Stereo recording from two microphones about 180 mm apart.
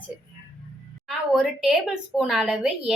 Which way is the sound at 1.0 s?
5° right (ahead or behind).